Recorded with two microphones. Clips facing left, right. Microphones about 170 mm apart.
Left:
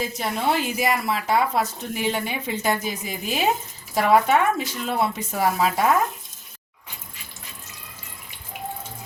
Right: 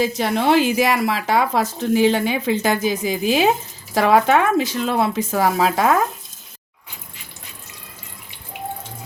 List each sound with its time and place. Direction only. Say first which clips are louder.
0.0 s speech: right 6 dB; 90° right